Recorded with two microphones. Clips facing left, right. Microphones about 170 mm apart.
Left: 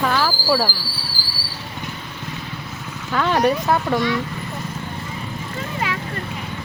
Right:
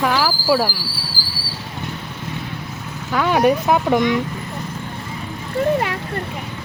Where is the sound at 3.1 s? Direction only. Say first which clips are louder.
Right 2 dB; 10° right (ahead or behind).